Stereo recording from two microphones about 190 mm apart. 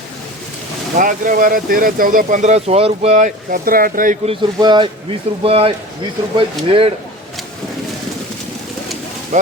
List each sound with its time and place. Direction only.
0.9 s speech: 45° right (ahead or behind)
4.3 s speech: 25° right (ahead or behind)
9.3 s speech: 35° right (ahead or behind)